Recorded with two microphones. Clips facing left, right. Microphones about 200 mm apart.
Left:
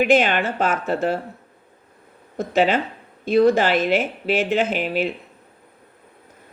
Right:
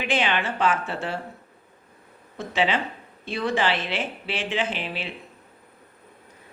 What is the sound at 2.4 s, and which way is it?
Speech, 45° left (ahead or behind).